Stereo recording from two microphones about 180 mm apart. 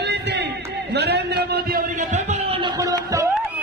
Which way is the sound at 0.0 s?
70° right (ahead or behind).